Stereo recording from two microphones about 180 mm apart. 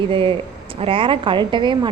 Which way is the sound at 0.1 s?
30° right (ahead or behind).